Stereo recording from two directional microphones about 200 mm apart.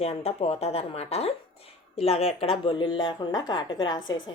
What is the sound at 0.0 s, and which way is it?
Speech, 30° left (ahead or behind).